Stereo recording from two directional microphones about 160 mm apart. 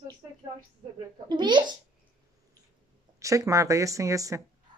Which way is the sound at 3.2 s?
20° right (ahead or behind).